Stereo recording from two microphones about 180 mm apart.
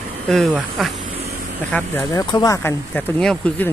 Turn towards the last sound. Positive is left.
turn(degrees=10)  # may be behind; listen again after turning